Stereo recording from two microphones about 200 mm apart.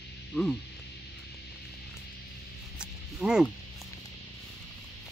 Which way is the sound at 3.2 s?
5° right (ahead or behind).